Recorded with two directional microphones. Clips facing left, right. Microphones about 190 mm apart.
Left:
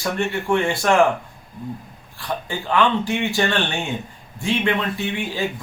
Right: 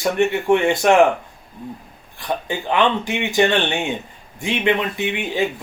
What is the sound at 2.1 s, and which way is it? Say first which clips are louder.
A man's voice: right 3 dB; 20° right (ahead or behind).